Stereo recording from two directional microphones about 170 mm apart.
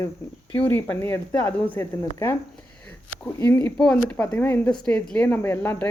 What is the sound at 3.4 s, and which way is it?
Speech, 15° left (ahead or behind).